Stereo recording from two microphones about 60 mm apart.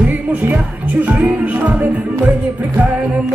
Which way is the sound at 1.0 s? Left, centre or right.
Right.